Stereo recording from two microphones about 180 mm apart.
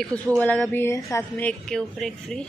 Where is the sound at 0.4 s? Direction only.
10° left (ahead or behind).